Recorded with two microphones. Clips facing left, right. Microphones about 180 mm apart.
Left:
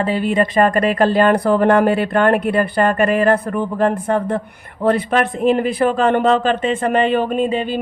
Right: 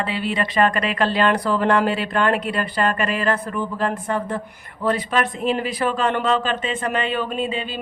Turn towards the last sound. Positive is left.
turn(degrees=50)  # may be behind; listen again after turning